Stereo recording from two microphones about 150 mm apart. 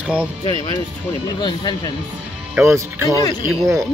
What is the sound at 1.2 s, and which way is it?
Speech, 30° left (ahead or behind).